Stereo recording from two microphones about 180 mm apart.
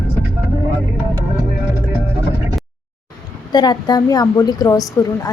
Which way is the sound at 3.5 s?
25° left (ahead or behind).